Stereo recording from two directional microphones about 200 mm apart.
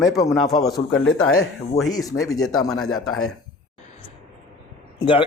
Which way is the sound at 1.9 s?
15° left (ahead or behind).